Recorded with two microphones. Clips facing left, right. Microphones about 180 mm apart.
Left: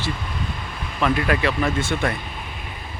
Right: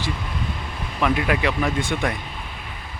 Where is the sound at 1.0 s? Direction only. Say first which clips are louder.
Left 1 dB; 10° right (ahead or behind).